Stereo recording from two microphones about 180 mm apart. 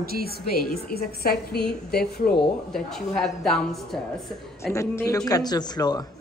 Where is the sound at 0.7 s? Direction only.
55° left (ahead or behind).